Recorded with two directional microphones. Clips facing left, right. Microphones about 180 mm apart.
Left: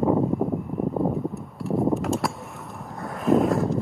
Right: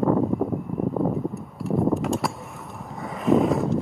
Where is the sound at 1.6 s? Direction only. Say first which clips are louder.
Even; centre (ahead or behind).